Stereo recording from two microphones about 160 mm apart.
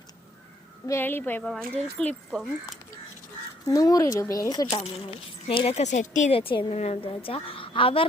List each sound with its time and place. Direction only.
0.9 s speech: 15° left (ahead or behind)
3.7 s speech: 20° left (ahead or behind)
4.8 s speech: 35° left (ahead or behind)
6.3 s a woman's voice: 35° left (ahead or behind)